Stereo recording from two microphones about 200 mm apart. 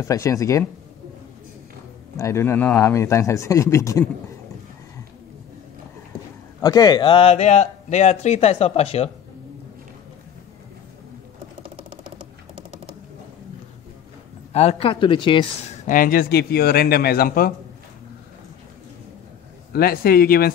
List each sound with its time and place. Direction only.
0.0 s speech: 15° left (ahead or behind)
2.1 s speech: 15° left (ahead or behind)
6.6 s a man's voice: 20° left (ahead or behind)
14.5 s speech: 30° left (ahead or behind)
15.9 s a man's voice: 45° left (ahead or behind)
19.7 s a man's voice: 50° left (ahead or behind)